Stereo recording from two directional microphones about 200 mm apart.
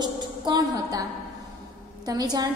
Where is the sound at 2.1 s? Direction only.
20° right (ahead or behind).